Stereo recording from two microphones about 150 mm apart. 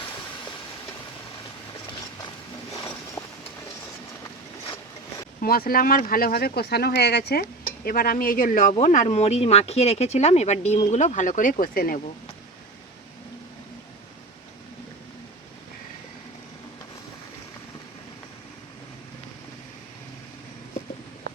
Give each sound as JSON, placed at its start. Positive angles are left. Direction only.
{"t": 3.2, "sound": "vehicle", "side_deg": 25}
{"t": 5.4, "sound": "speech", "side_deg": 80}